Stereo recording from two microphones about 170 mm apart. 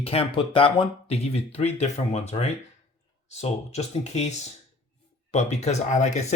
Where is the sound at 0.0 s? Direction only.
35° left (ahead or behind).